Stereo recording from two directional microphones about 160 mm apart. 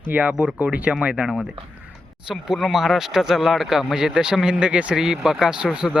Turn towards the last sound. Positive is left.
turn(degrees=-5)  # may be behind; listen again after turning